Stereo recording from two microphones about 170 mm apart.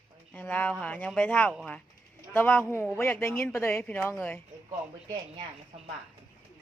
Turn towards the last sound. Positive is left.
turn(degrees=-35)  # may be behind; listen again after turning